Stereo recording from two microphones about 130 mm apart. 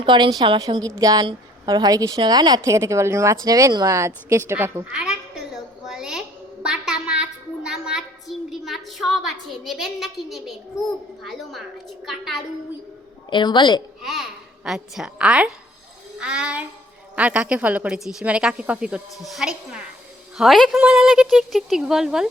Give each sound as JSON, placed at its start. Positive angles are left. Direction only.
{"t": 0.0, "sound": "a woman's voice", "side_deg": -35}
{"t": 5.8, "sound": "a sound", "side_deg": -5}
{"t": 11.2, "sound": "speech", "side_deg": 0}
{"t": 13.3, "sound": "a woman's voice", "side_deg": 35}
{"t": 14.0, "sound": "a child's voice", "side_deg": 0}